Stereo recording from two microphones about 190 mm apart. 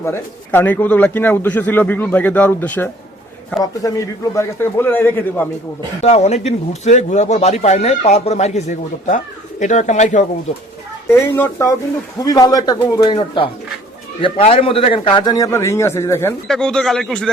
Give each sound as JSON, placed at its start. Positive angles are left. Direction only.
{"t": 0.0, "sound": "a man's voice", "side_deg": 10}
{"t": 6.0, "sound": "speech", "side_deg": 35}
{"t": 11.1, "sound": "a man's voice", "side_deg": 15}